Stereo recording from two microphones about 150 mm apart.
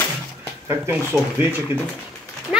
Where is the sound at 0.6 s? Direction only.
15° right (ahead or behind).